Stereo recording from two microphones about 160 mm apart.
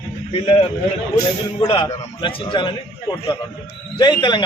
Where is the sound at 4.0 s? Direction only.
30° left (ahead or behind).